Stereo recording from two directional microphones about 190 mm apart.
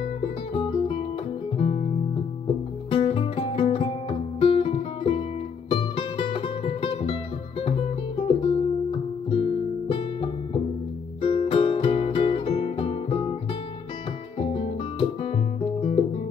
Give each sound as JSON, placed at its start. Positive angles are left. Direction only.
{"t": 1.6, "sound": "music", "side_deg": 35}
{"t": 8.3, "sound": "music", "side_deg": 25}
{"t": 9.3, "sound": "guitar", "side_deg": 25}
{"t": 11.2, "sound": "music", "side_deg": 30}
{"t": 14.4, "sound": "guitar", "side_deg": 30}